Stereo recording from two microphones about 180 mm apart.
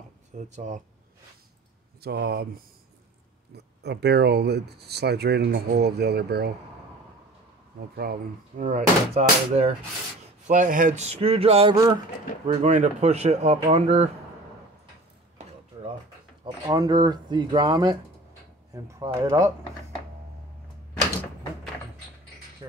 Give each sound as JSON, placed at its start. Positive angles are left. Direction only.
{"t": 0.5, "sound": "speech", "side_deg": -40}
{"t": 2.0, "sound": "speech", "side_deg": -60}
{"t": 3.5, "sound": "speech", "side_deg": -70}
{"t": 7.9, "sound": "speech", "side_deg": -55}
{"t": 8.5, "sound": "speech", "side_deg": -40}
{"t": 11.7, "sound": "speech", "side_deg": -20}
{"t": 12.4, "sound": "speech", "side_deg": -40}
{"t": 16.4, "sound": "speech", "side_deg": -20}
{"t": 22.6, "sound": "a sound", "side_deg": -25}